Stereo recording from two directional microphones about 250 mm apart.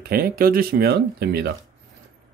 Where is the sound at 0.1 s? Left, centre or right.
Right.